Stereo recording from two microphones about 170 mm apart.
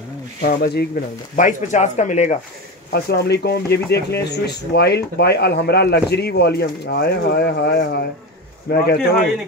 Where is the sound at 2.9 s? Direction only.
70° left (ahead or behind).